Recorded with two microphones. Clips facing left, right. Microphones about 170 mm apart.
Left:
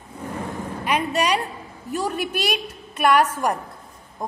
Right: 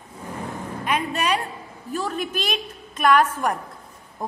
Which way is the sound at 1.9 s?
10° left (ahead or behind).